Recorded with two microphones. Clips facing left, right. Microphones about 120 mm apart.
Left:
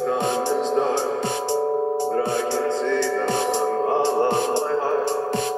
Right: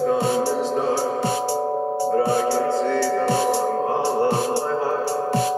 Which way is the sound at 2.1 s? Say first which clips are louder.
Right 3 dB; 40° right (ahead or behind).